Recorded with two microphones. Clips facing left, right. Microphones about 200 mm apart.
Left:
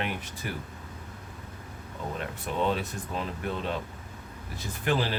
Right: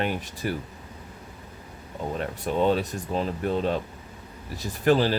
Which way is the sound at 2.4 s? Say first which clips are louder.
Right 6 dB; 35° right (ahead or behind).